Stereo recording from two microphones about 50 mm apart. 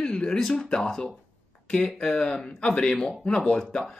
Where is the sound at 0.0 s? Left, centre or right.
Centre.